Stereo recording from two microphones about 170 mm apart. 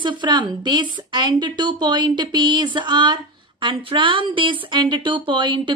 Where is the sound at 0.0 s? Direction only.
25° right (ahead or behind).